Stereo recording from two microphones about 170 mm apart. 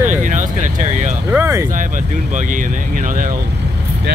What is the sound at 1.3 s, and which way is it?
Speech, 15° right (ahead or behind).